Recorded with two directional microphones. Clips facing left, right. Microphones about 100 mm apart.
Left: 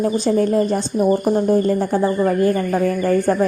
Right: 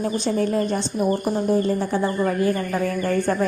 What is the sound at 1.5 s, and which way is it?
Speech, 60° left (ahead or behind).